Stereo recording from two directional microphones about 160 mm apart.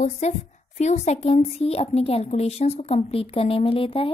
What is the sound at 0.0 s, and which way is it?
A woman's voice, 45° left (ahead or behind).